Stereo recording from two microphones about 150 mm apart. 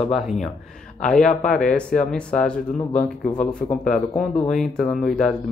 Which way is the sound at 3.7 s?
60° left (ahead or behind).